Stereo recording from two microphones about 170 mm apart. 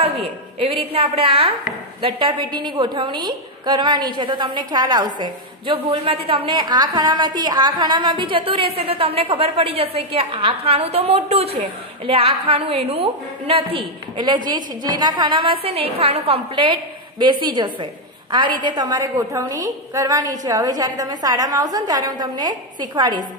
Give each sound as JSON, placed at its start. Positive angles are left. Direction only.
{"t": 0.0, "sound": "a woman's voice", "side_deg": -35}